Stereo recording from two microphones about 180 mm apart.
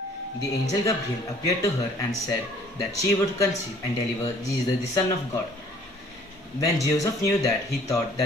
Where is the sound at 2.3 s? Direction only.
20° left (ahead or behind).